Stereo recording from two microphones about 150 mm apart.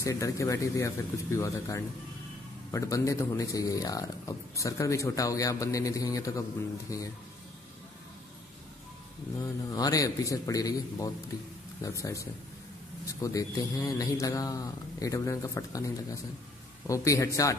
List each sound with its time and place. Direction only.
0.0 s speech: 20° left (ahead or behind)
9.4 s speech: 25° left (ahead or behind)